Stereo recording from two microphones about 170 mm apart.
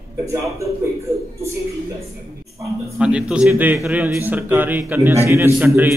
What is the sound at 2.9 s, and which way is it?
A man's voice, 5° right (ahead or behind).